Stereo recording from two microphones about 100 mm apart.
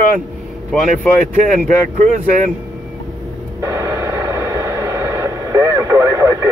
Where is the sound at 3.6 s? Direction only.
30° right (ahead or behind).